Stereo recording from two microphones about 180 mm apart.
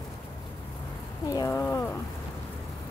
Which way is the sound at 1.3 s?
20° left (ahead or behind).